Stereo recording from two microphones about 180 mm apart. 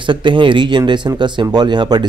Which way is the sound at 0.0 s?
25° right (ahead or behind).